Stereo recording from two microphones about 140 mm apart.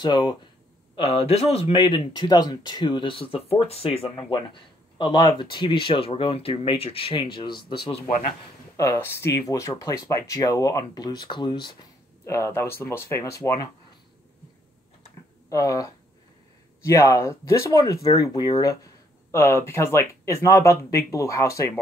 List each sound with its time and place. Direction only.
0.0 s speech: 30° left (ahead or behind)
0.9 s speech: 40° left (ahead or behind)
8.7 s speech: 20° left (ahead or behind)
12.3 s speech: 20° left (ahead or behind)
15.5 s speech: 25° left (ahead or behind)